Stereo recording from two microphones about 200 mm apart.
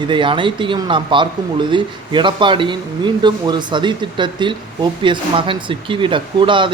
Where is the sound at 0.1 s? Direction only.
25° right (ahead or behind).